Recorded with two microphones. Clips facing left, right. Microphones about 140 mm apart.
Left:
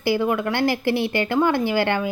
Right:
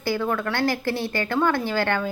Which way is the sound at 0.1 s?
15° left (ahead or behind).